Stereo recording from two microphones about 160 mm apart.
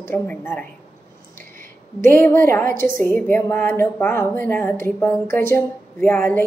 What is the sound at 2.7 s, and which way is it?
Speech, 60° right (ahead or behind).